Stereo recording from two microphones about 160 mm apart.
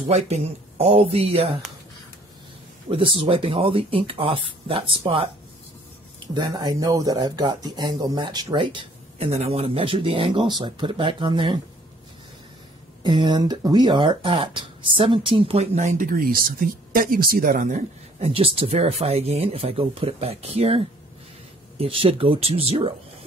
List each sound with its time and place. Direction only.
0.1 s speech: 40° right (ahead or behind)
2.9 s speech: 35° right (ahead or behind)
13.0 s speech: 30° right (ahead or behind); by 18.3 s 50° right (ahead or behind)
18.3 s speech: 35° right (ahead or behind)